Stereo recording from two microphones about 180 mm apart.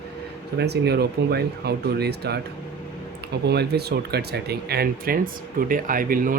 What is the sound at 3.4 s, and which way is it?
Speech, 65° right (ahead or behind).